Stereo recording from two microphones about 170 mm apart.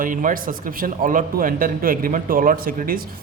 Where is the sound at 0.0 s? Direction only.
50° right (ahead or behind).